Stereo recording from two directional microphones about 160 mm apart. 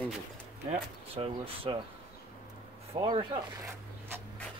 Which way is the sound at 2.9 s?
35° right (ahead or behind).